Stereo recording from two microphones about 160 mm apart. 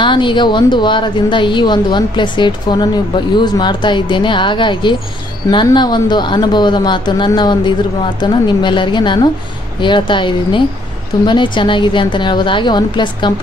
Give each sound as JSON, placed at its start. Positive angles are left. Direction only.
{"t": 0.0, "sound": "a woman's voice", "side_deg": 30}